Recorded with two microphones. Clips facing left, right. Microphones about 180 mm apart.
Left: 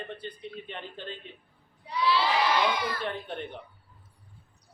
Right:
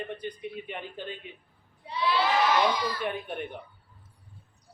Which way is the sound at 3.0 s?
10° right (ahead or behind).